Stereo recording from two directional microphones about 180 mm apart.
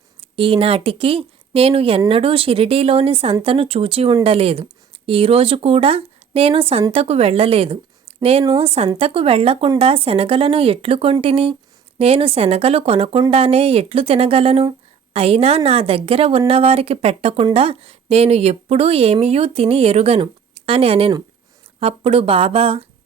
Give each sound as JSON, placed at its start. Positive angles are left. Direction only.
{"t": 0.2, "sound": "a woman's voice", "side_deg": -30}